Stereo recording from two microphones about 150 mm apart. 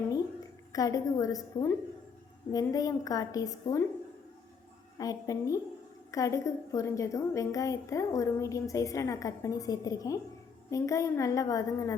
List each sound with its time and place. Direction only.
0.7 s a woman's voice: 25° left (ahead or behind)
4.9 s a woman's voice: 25° left (ahead or behind)